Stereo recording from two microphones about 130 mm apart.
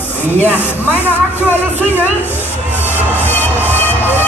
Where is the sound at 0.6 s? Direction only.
15° left (ahead or behind).